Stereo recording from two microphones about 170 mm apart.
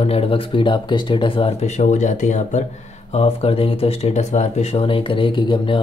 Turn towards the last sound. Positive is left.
turn(degrees=30)  # may be behind; listen again after turning